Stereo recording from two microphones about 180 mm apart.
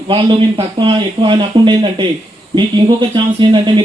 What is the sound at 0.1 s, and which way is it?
A man's voice, 30° right (ahead or behind).